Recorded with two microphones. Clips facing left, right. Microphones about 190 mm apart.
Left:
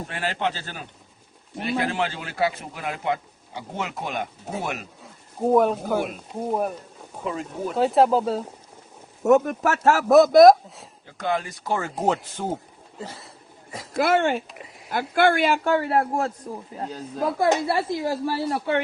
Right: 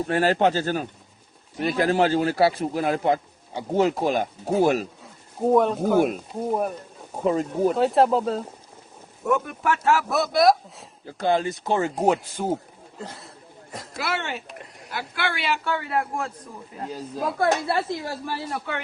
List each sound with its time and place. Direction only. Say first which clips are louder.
0.1 s speech: right 8 dB; 40° right (ahead or behind)
5.0 s speech: left 1 dB; centre (ahead or behind)
7.3 s speech: right 8 dB; 40° right (ahead or behind)
7.7 s speech: left 2 dB; centre (ahead or behind)
9.2 s a man's voice: left 5 dB; 45° left (ahead or behind)
11.0 s speech: right 4 dB; 30° right (ahead or behind)
12.0 s speech: even; 10° right (ahead or behind)
13.0 s a sound: left 1 dB; centre (ahead or behind)
13.9 s a man's voice: left 9 dB; 50° left (ahead or behind)
16.9 s speech: left 2 dB; centre (ahead or behind)
17.3 s a woman's voice: left 1 dB; 20° left (ahead or behind)
18.3 s a man's voice: left 6 dB; 35° left (ahead or behind)